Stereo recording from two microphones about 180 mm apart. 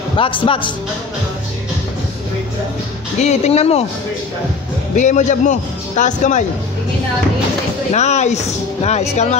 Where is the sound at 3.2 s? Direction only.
40° left (ahead or behind).